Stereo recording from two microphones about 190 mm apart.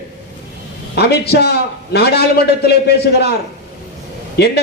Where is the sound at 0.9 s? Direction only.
55° left (ahead or behind).